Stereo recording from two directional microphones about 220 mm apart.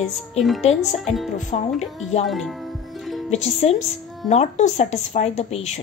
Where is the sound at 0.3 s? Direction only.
30° left (ahead or behind).